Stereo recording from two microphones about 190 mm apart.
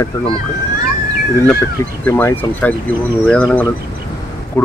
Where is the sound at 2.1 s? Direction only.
10° left (ahead or behind).